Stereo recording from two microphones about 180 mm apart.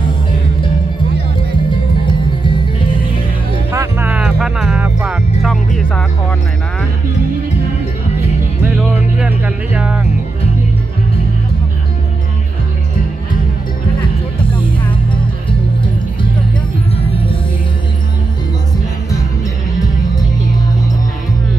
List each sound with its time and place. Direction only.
3.7 s music: 15° right (ahead or behind)
8.9 s music: 10° right (ahead or behind)
16.9 s music: 35° left (ahead or behind)